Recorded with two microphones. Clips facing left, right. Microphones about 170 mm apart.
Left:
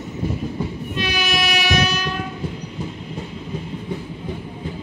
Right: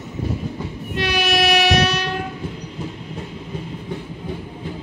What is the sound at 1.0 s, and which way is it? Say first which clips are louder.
Train: right 4 dB; 70° right (ahead or behind).